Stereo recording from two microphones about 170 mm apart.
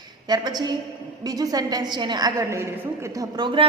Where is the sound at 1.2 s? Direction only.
20° right (ahead or behind).